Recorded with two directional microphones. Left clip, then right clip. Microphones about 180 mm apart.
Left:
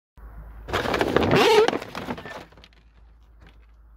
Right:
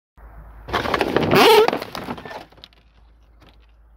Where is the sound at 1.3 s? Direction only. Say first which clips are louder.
Right 6 dB; 25° right (ahead or behind).